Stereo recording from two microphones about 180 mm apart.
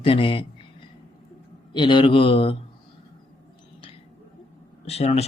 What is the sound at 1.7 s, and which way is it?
Speech, 25° left (ahead or behind).